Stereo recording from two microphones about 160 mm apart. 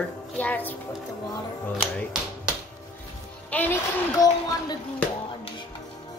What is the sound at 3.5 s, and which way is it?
Child singing, 10° left (ahead or behind).